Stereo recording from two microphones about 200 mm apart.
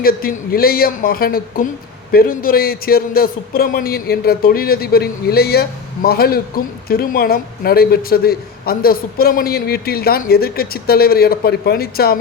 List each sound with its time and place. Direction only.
0.0 s a man's voice: 45° left (ahead or behind)